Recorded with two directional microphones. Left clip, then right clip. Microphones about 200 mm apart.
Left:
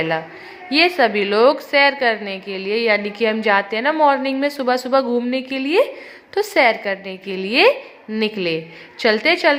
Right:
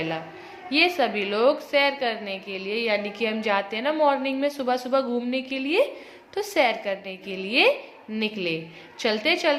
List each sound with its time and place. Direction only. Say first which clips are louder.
0.7 s a woman's voice: left 6 dB; 15° left (ahead or behind)